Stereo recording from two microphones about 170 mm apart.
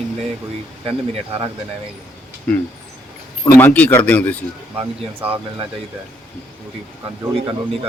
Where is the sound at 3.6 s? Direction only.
10° left (ahead or behind).